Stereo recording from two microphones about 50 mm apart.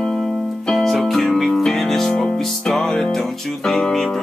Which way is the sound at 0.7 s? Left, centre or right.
Centre.